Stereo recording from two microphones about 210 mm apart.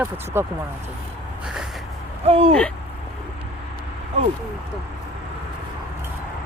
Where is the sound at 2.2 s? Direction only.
30° right (ahead or behind).